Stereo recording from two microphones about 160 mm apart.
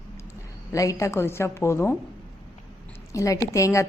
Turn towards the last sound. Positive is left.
turn(degrees=20)  # may be behind; listen again after turning